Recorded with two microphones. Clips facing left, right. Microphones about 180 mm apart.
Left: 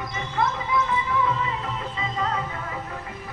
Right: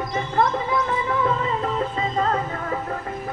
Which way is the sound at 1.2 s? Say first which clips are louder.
Right 3 dB; 50° right (ahead or behind).